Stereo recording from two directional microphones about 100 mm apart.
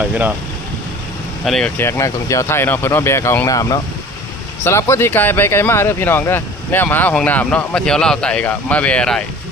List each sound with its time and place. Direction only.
0.1 s speech: 15° right (ahead or behind)
1.5 s speech: 5° left (ahead or behind)
1.8 s speech: 30° left (ahead or behind)
4.6 s speech: 25° left (ahead or behind); by 9.2 s 10° left (ahead or behind)